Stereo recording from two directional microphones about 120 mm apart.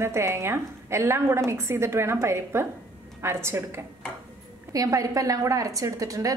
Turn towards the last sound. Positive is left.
turn(degrees=-30)  # may be behind; listen again after turning